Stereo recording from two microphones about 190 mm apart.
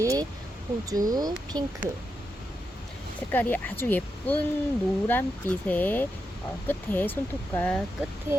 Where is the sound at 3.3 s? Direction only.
10° left (ahead or behind).